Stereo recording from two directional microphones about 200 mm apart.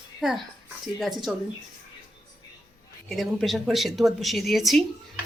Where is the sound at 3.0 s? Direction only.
Centre (ahead or behind).